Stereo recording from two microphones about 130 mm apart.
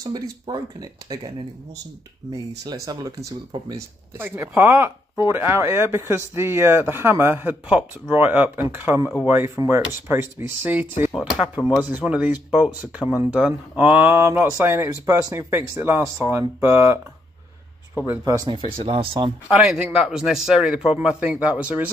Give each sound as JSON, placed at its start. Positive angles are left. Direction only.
{"t": 0.0, "sound": "speech", "side_deg": -30}
{"t": 2.3, "sound": "speech", "side_deg": -25}
{"t": 18.2, "sound": "speech", "side_deg": -30}
{"t": 18.5, "sound": "speech", "side_deg": -45}
{"t": 19.5, "sound": "speech", "side_deg": -5}